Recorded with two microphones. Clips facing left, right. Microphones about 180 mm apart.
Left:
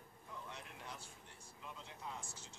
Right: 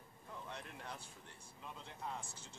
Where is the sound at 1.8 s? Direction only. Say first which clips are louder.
Right 4 dB; 55° right (ahead or behind).